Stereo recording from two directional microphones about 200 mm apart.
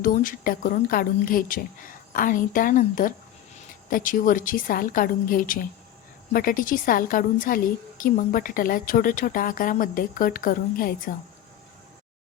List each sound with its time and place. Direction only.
0.0 s a woman's voice: 40° left (ahead or behind)